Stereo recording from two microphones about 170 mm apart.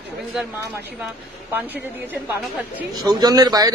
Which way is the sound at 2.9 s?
25° right (ahead or behind).